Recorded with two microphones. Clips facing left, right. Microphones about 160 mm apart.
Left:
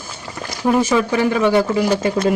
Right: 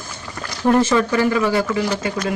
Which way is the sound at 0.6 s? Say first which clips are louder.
Even; 10° left (ahead or behind).